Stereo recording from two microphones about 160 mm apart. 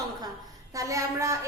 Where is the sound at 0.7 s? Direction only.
20° right (ahead or behind).